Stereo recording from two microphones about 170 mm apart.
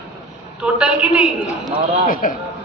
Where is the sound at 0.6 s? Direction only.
5° right (ahead or behind).